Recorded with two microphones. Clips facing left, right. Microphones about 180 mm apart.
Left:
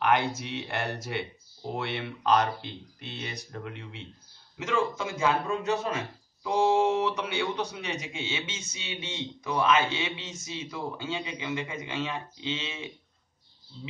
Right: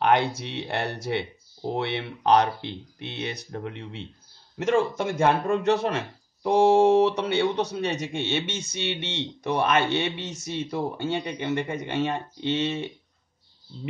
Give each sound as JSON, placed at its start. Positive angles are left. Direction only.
{"t": 0.0, "sound": "a man's voice", "side_deg": -65}